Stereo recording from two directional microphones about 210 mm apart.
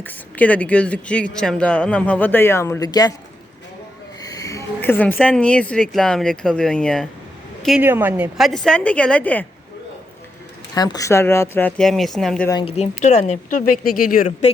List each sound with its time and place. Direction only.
0.0 s speech: 10° left (ahead or behind)
4.2 s a woman's voice: 15° left (ahead or behind)
10.8 s speech: 15° left (ahead or behind); by 12.5 s centre (ahead or behind)
12.5 s speech: 25° left (ahead or behind); by 14.3 s 40° left (ahead or behind)